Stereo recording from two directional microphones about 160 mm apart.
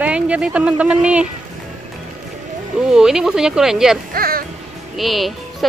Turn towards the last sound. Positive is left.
turn(degrees=0)  # may be behind; listen again after turning